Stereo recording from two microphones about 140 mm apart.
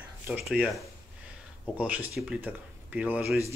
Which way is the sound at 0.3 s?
5° right (ahead or behind).